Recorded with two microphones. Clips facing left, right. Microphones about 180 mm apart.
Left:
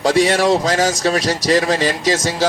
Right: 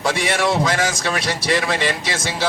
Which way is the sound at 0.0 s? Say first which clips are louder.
Left 6 dB; 40° left (ahead or behind).